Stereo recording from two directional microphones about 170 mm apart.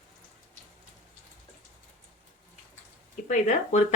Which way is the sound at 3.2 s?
40° left (ahead or behind).